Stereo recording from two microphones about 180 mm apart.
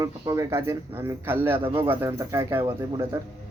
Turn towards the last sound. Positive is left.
turn(degrees=-20)  # may be behind; listen again after turning